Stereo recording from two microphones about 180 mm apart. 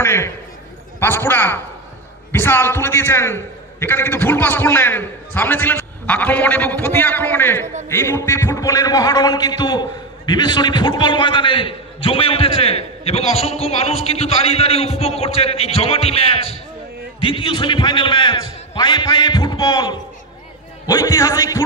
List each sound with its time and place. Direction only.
0.0 s a man's voice: 15° left (ahead or behind)